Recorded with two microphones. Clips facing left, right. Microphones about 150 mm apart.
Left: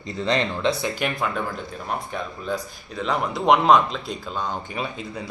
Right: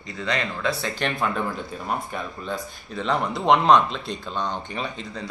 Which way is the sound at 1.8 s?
Centre (ahead or behind).